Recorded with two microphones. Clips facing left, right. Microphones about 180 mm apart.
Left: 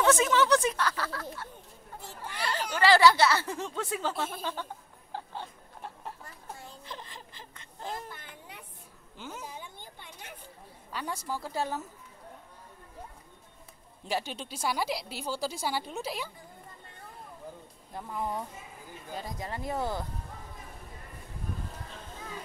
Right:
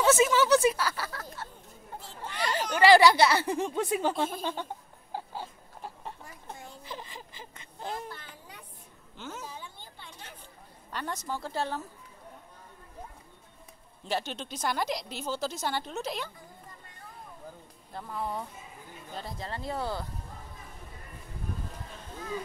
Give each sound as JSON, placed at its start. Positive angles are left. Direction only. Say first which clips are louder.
{"t": 0.0, "sound": "speech", "louder": "right 1 dB", "side_deg": -5}
{"t": 2.4, "sound": "speech", "louder": "right 4 dB", "side_deg": -15}
{"t": 5.1, "sound": "a sound", "louder": "right 2 dB", "side_deg": -5}
{"t": 9.2, "sound": "a sound", "louder": "right 1 dB", "side_deg": 10}
{"t": 10.9, "sound": "speech", "louder": "even", "side_deg": 5}
{"t": 14.0, "sound": "speech", "louder": "right 1 dB", "side_deg": 10}
{"t": 17.9, "sound": "speech", "louder": "left 1 dB", "side_deg": 15}